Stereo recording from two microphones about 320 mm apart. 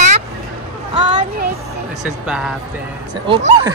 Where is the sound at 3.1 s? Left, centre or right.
Centre.